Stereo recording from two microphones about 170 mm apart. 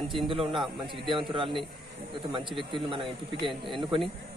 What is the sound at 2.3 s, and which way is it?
A man's voice, 30° right (ahead or behind).